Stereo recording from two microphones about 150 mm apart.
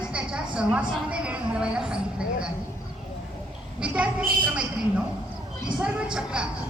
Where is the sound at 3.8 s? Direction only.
10° right (ahead or behind).